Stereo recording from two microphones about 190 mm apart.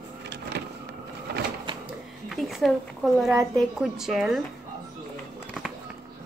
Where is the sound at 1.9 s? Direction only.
Centre (ahead or behind).